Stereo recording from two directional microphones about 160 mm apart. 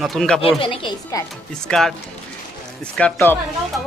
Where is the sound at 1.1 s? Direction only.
20° left (ahead or behind).